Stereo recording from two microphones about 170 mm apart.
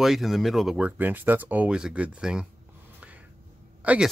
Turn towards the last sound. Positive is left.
turn(degrees=-10)  # may be behind; listen again after turning